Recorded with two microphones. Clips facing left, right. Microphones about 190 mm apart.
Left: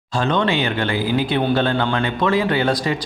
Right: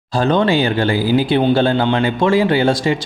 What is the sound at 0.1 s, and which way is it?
Speech, 35° right (ahead or behind).